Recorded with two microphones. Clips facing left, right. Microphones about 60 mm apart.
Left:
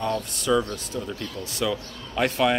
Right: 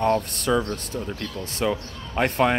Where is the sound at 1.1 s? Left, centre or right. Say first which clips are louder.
Right 1 dB; right.